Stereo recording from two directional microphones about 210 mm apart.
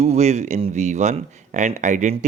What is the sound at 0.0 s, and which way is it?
Speech, 30° right (ahead or behind).